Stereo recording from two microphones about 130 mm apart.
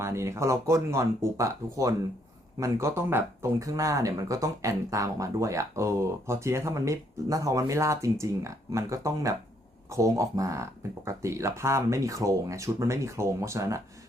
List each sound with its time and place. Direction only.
0.0 s speech: 20° right (ahead or behind)